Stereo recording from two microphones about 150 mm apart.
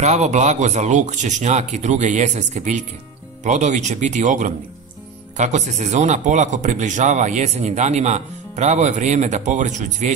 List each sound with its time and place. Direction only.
0.0 s speech: 50° right (ahead or behind)